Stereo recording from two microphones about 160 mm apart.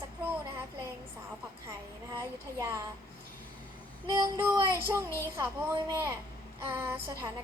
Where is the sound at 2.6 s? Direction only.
20° right (ahead or behind).